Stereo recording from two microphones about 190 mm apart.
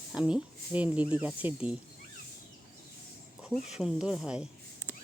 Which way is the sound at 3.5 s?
5° right (ahead or behind).